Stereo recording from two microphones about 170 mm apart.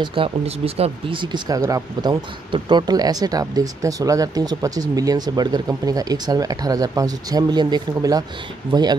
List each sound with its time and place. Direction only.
0.0 s speech: 30° right (ahead or behind)